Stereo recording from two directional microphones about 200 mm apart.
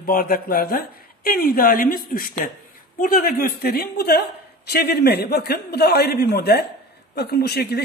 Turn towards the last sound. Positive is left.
turn(degrees=55)  # may be behind; listen again after turning